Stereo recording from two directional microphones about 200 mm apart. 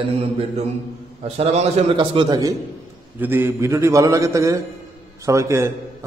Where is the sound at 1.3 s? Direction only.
30° right (ahead or behind); by 5.7 s 15° right (ahead or behind).